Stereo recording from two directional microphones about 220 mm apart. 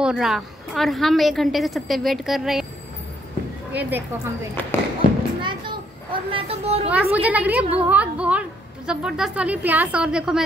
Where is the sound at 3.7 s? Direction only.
10° right (ahead or behind).